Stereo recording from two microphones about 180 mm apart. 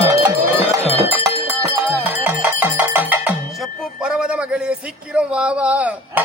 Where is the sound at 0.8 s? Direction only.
35° left (ahead or behind).